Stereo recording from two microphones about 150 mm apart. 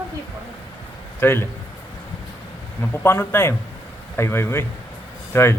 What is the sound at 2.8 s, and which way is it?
A man's voice, 15° left (ahead or behind).